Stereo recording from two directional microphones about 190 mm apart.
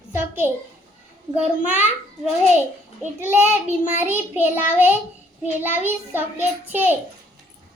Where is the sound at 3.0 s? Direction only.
10° right (ahead or behind).